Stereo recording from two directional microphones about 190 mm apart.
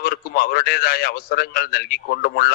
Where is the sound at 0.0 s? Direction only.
50° left (ahead or behind).